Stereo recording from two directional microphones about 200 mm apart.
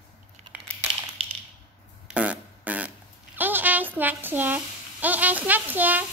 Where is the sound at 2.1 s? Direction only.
5° right (ahead or behind).